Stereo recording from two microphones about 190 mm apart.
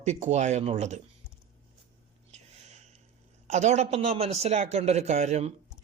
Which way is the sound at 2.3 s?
35° right (ahead or behind).